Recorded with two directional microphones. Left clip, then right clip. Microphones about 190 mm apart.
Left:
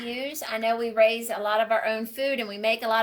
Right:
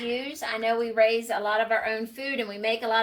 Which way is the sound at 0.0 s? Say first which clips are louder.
Right 2 dB; 55° left (ahead or behind).